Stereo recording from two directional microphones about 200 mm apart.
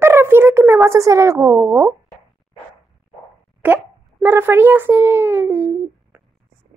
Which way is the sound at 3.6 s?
10° right (ahead or behind).